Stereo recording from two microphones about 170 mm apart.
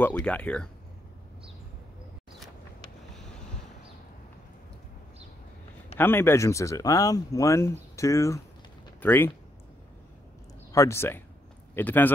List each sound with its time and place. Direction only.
0.0 s speech: 5° left (ahead or behind)
3.2 s boat: 5° left (ahead or behind)
5.9 s speech: 15° left (ahead or behind)
10.7 s speech: 15° left (ahead or behind)